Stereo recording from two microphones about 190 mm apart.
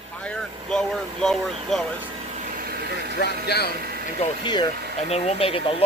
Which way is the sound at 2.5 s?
55° right (ahead or behind).